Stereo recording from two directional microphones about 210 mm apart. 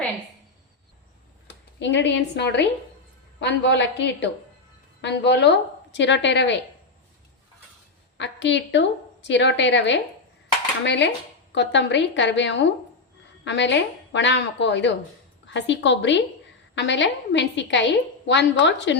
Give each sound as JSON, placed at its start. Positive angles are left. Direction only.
{"t": 1.5, "sound": "a woman's voice", "side_deg": 60}
{"t": 8.2, "sound": "a woman's voice", "side_deg": 60}